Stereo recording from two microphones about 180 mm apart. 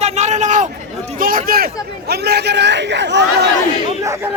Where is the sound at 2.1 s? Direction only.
65° right (ahead or behind).